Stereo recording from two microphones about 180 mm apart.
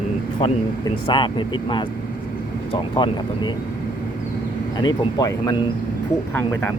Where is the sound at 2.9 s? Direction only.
25° left (ahead or behind).